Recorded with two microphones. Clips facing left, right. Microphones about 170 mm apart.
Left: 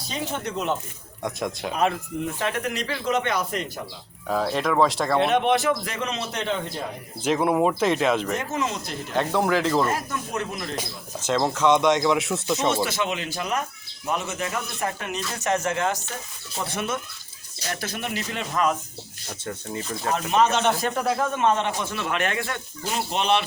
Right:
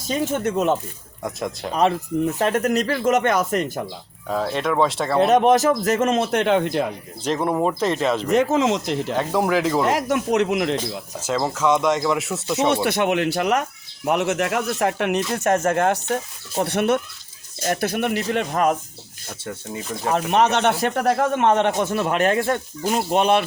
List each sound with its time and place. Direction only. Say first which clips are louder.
0.0 s speech: right 8 dB; 45° right (ahead or behind)
1.2 s speech: right 1 dB; centre (ahead or behind)
2.4 s speech: right 8 dB; 45° right (ahead or behind)
4.3 s speech: right 1 dB; centre (ahead or behind)
5.2 s speech: right 7 dB; 40° right (ahead or behind); by 6.8 s 70° right (ahead or behind)
7.3 s speech: even; 5° left (ahead or behind)
8.4 s speech: right 9 dB; 90° right
9.1 s speech: even; 5° right (ahead or behind)
9.8 s speech: right 6 dB; 80° right
11.2 s speech: even; 5° right (ahead or behind)
12.5 s speech: right 7 dB; 60° right (ahead or behind)
15.3 s speech: right 6 dB; 50° right (ahead or behind)
20.1 s speech: right 3 dB; 65° right (ahead or behind)
21.8 s speech: right 7 dB; 45° right (ahead or behind)